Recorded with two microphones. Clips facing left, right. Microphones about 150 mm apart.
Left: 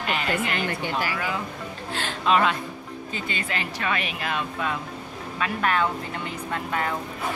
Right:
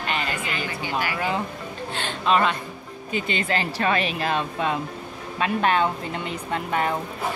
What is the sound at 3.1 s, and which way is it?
Speech, 20° right (ahead or behind).